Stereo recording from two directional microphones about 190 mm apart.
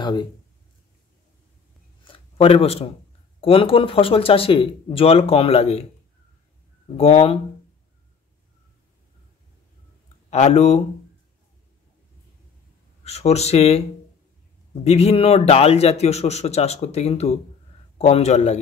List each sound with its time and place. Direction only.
0.0 s speech: 25° left (ahead or behind)
2.0 s a sound: 30° left (ahead or behind)
3.3 s speech: 30° left (ahead or behind)
7.0 s a man's voice: 35° left (ahead or behind)
10.3 s a man's voice: 35° left (ahead or behind)
13.0 s a man's voice: 35° left (ahead or behind)